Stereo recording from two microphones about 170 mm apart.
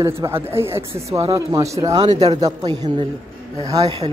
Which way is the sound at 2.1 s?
40° right (ahead or behind).